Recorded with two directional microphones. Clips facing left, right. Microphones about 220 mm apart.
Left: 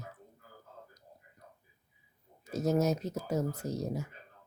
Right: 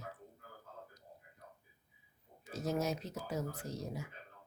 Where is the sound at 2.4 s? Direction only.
45° left (ahead or behind).